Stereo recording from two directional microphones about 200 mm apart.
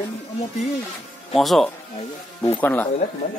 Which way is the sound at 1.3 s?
Centre (ahead or behind).